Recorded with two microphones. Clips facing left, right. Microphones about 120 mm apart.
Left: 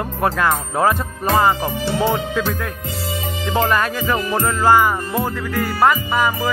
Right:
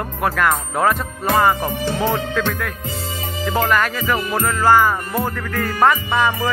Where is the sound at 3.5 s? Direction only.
25° left (ahead or behind).